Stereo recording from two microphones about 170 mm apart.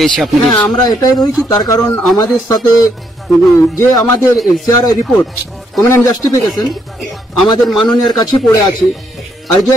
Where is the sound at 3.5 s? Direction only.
15° left (ahead or behind).